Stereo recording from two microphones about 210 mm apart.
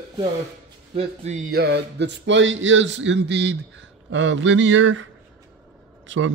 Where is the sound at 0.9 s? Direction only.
35° right (ahead or behind); by 5.1 s 65° right (ahead or behind).